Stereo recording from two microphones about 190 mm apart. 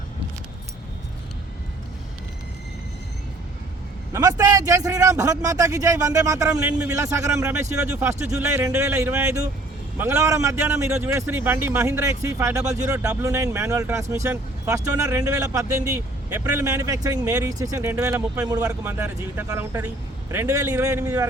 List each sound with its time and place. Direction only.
4.1 s a man's voice: 15° right (ahead or behind)